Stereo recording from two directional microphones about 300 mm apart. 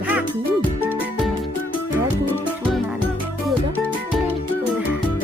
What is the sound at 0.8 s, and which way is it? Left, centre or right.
Music, centre.